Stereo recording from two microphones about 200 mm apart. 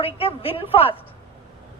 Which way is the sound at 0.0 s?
30° left (ahead or behind).